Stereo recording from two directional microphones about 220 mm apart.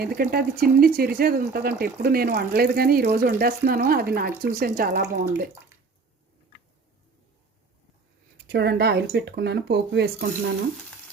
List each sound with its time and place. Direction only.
0.0 s speech: 40° right (ahead or behind)
8.4 s speech: 50° right (ahead or behind)